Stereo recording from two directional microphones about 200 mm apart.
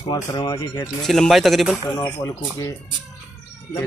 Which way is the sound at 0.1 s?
20° left (ahead or behind).